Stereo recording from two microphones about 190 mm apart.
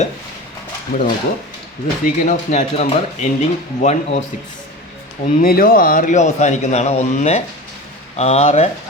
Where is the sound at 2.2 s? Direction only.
40° left (ahead or behind).